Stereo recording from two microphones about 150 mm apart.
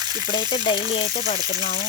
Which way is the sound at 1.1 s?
55° left (ahead or behind).